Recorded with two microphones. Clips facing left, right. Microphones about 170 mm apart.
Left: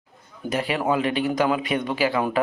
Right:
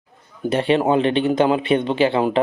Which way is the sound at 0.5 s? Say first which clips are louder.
Right 6 dB; 30° right (ahead or behind).